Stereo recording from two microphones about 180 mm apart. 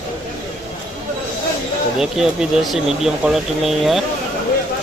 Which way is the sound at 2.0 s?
Centre (ahead or behind).